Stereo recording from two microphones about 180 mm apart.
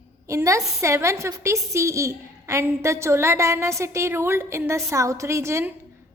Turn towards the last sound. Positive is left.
turn(degrees=-15)  # may be behind; listen again after turning